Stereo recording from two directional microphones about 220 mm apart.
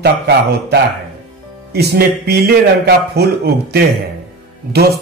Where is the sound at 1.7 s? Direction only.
45° right (ahead or behind).